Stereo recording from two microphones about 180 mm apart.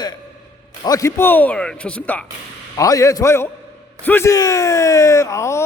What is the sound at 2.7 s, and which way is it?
Speech, 20° left (ahead or behind).